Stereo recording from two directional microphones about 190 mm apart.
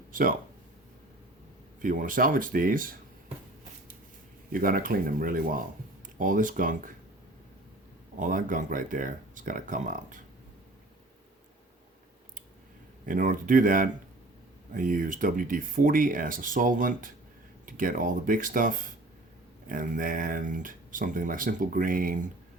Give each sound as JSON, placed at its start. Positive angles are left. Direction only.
{"t": 0.1, "sound": "speech", "side_deg": -45}
{"t": 1.8, "sound": "speech", "side_deg": -45}
{"t": 4.5, "sound": "speech", "side_deg": -50}
{"t": 8.2, "sound": "speech", "side_deg": -45}
{"t": 13.1, "sound": "speech", "side_deg": -45}